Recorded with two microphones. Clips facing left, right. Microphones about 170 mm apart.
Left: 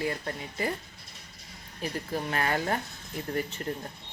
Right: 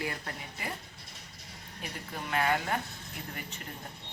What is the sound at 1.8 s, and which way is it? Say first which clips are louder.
Speech: left 8 dB; 40° left (ahead or behind).